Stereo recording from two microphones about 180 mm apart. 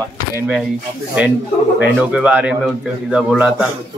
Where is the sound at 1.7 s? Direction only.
10° right (ahead or behind).